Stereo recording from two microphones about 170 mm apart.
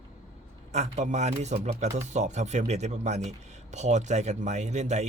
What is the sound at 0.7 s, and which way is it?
Speech, 40° right (ahead or behind).